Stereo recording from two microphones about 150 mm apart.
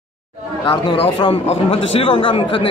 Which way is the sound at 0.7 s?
35° left (ahead or behind).